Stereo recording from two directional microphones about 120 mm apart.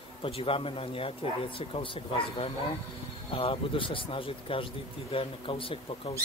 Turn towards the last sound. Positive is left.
turn(degrees=50)  # may be behind; listen again after turning